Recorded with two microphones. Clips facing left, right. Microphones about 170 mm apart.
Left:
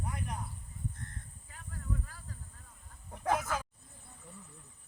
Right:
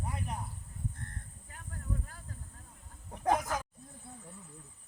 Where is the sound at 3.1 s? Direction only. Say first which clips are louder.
Right 2 dB; 15° right (ahead or behind).